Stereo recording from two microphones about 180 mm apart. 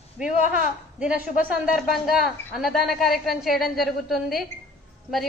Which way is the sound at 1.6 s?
Centre (ahead or behind).